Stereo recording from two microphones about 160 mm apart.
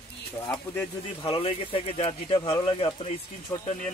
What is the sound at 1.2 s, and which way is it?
Speech, 35° left (ahead or behind).